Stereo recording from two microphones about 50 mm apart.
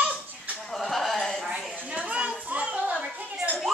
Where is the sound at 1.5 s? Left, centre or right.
Right.